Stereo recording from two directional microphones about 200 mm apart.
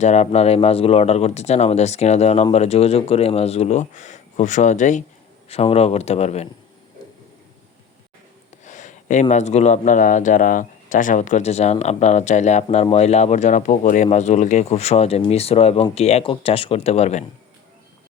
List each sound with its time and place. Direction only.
0.0 s speech: 35° left (ahead or behind)
8.6 s a sound: 40° left (ahead or behind)
9.3 s speech: 35° left (ahead or behind)